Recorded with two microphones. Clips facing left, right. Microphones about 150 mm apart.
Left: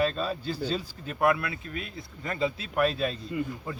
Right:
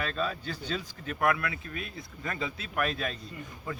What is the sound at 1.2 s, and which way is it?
A man's voice, 25° left (ahead or behind).